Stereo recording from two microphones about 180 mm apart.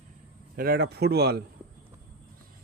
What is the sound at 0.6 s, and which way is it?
Speech, 60° right (ahead or behind).